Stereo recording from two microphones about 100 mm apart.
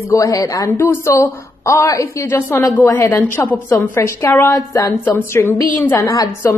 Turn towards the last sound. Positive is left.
turn(degrees=35)  # may be behind; listen again after turning